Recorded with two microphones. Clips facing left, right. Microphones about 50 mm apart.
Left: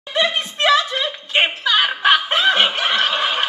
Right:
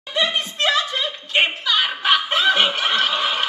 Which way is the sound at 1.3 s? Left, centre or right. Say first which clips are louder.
Left 2 dB; centre.